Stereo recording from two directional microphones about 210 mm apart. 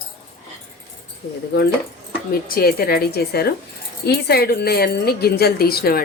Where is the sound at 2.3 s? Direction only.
45° left (ahead or behind).